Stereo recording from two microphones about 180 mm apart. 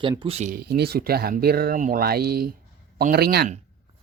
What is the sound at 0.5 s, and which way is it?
Speech, 60° right (ahead or behind).